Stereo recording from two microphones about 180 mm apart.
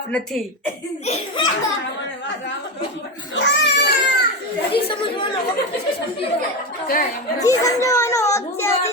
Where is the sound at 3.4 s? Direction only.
75° left (ahead or behind).